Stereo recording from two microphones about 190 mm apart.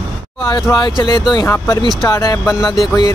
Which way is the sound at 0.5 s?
20° left (ahead or behind).